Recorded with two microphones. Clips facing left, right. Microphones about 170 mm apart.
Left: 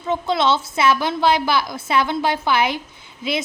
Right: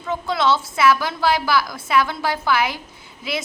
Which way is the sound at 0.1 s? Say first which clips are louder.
Left 1 dB; 20° left (ahead or behind).